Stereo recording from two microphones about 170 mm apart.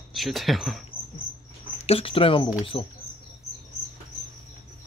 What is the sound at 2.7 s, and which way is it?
Speech, 20° left (ahead or behind).